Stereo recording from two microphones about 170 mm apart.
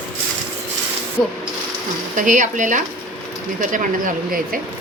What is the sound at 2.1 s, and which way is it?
Speech, 50° right (ahead or behind).